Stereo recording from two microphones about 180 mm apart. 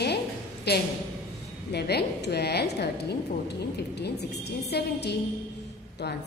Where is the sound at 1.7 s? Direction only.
65° left (ahead or behind).